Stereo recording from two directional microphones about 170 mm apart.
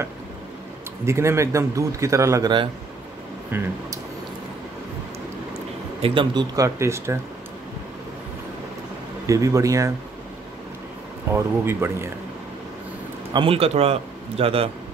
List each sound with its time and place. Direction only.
1.0 s speech: 15° right (ahead or behind)
3.5 s speech: 10° right (ahead or behind)
6.0 s speech: 30° right (ahead or behind)
9.2 s speech: 20° right (ahead or behind)
11.3 s speech: 15° right (ahead or behind)
13.3 s a man's voice: 30° right (ahead or behind)